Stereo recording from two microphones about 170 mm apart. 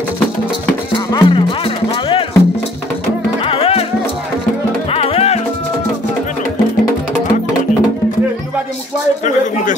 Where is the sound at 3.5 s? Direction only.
35° left (ahead or behind).